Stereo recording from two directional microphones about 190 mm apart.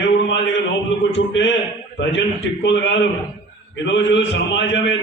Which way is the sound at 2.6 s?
70° left (ahead or behind).